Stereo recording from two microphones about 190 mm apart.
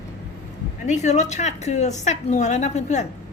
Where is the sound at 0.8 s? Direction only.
40° left (ahead or behind).